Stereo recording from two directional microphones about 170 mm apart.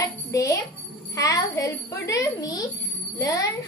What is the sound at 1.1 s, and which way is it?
Speech, 20° left (ahead or behind).